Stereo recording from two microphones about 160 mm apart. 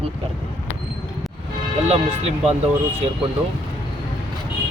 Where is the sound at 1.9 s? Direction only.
45° right (ahead or behind).